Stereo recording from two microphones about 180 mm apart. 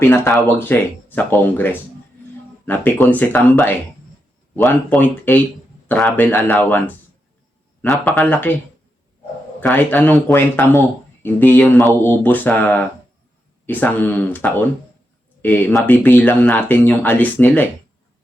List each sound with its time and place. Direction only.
0.0 s speech: 10° left (ahead or behind)
9.6 s speech: 10° left (ahead or behind)